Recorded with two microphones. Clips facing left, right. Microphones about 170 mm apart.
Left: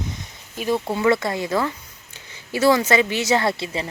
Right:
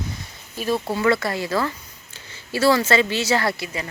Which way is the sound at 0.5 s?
15° left (ahead or behind).